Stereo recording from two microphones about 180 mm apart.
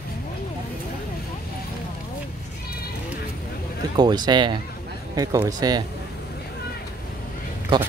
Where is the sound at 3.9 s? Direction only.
25° right (ahead or behind).